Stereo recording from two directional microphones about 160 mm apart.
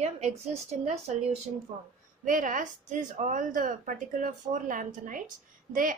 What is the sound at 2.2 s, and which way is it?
A woman's voice, 55° right (ahead or behind).